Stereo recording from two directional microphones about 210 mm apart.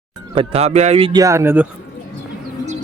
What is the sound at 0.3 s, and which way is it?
Speech, 30° right (ahead or behind).